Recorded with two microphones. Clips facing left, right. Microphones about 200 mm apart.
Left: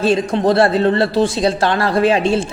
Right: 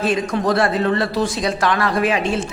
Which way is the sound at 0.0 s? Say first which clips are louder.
Left 4 dB; 30° left (ahead or behind).